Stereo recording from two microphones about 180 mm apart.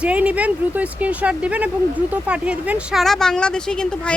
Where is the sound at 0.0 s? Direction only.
5° right (ahead or behind).